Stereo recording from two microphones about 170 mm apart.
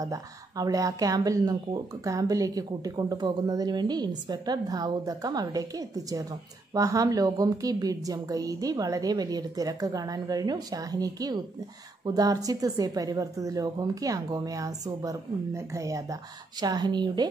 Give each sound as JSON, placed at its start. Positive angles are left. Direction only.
{"t": 0.0, "sound": "speech", "side_deg": -20}